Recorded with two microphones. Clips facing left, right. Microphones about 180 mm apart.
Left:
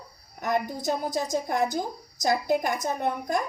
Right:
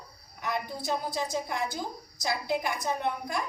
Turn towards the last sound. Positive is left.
turn(degrees=45)  # may be behind; listen again after turning